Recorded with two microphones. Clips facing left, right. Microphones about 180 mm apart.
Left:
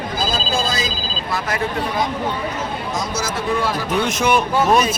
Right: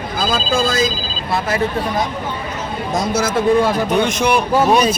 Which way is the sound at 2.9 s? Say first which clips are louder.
Right 9 dB; 55° right (ahead or behind).